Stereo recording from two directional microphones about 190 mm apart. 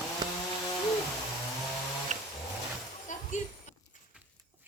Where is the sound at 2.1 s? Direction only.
40° right (ahead or behind).